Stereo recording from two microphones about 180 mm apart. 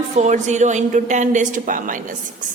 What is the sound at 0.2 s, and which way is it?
A woman's voice, 40° right (ahead or behind).